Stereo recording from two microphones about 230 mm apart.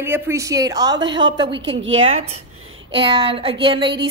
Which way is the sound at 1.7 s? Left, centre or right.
Right.